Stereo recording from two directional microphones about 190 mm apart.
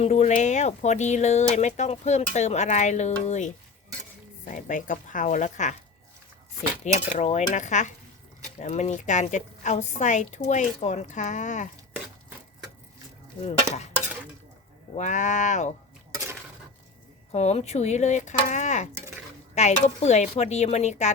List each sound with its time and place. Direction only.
0.0 s speech: 35° left (ahead or behind)
6.8 s speech: 40° left (ahead or behind)
14.9 s speech: 40° left (ahead or behind)
17.3 s speech: 35° left (ahead or behind)